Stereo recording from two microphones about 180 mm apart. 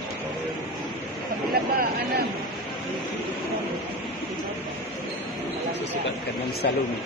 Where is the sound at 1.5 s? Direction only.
60° right (ahead or behind).